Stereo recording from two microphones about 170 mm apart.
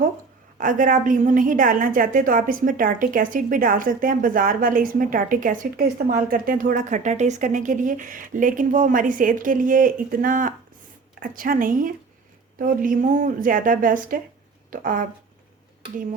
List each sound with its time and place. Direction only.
0.6 s a woman's voice: 50° right (ahead or behind)